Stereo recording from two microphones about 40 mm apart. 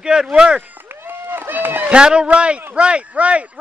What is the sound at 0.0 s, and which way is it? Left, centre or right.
Speech, right.